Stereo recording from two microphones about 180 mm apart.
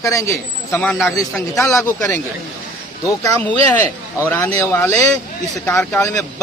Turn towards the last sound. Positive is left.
turn(degrees=15)  # may be behind; listen again after turning